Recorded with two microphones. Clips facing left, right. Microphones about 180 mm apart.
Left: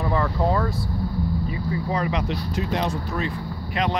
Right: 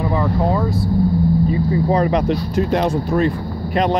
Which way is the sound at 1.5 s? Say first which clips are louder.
Right 9 dB; 35° right (ahead or behind).